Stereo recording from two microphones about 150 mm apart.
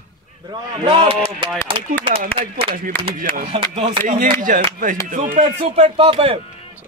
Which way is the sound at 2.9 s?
15° left (ahead or behind).